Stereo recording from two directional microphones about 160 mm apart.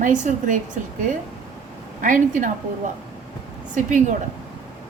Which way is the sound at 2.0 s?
55° right (ahead or behind).